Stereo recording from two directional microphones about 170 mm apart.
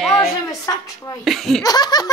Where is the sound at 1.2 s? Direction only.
Centre (ahead or behind).